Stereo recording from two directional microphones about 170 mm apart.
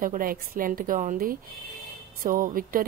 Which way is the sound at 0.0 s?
55° right (ahead or behind).